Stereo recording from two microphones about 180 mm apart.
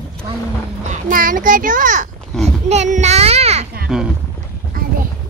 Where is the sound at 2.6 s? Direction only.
40° right (ahead or behind).